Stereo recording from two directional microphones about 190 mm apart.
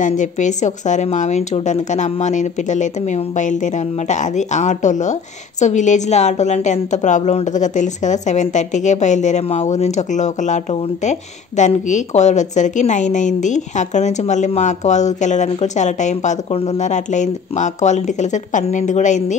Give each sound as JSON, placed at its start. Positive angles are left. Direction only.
{"t": 0.0, "sound": "a woman's voice", "side_deg": 40}